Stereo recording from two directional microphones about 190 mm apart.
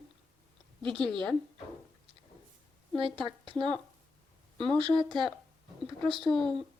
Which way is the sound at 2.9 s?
25° right (ahead or behind).